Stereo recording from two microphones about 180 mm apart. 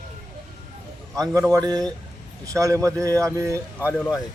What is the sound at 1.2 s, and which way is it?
Speech, 20° right (ahead or behind).